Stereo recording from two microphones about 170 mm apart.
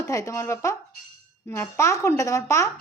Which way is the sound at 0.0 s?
20° left (ahead or behind).